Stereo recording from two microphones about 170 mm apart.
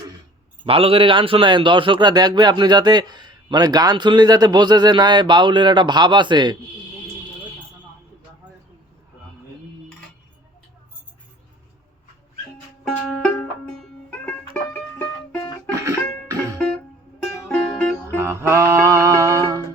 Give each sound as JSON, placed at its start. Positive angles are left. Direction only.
{"t": 0.6, "sound": "a man's voice", "side_deg": -35}
{"t": 12.8, "sound": "music", "side_deg": 5}
{"t": 15.7, "sound": "music", "side_deg": -15}
{"t": 16.6, "sound": "music", "side_deg": 5}
{"t": 18.2, "sound": "music", "side_deg": -15}